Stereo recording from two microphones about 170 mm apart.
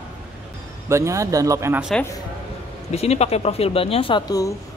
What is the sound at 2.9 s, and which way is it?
Speech, 40° left (ahead or behind).